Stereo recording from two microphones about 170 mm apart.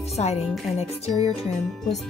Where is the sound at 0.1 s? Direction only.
40° left (ahead or behind).